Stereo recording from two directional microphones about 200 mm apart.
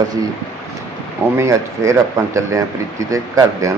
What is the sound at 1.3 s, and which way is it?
Speech, 15° right (ahead or behind).